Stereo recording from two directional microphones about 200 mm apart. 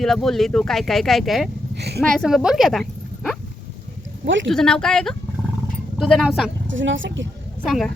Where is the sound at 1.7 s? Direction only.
55° right (ahead or behind).